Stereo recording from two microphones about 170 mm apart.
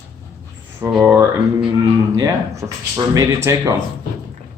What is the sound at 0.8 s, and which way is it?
Speech, 10° right (ahead or behind).